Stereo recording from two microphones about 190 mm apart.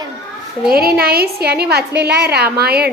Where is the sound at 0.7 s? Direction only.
55° right (ahead or behind).